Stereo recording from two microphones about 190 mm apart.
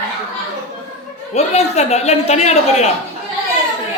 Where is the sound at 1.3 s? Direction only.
35° left (ahead or behind).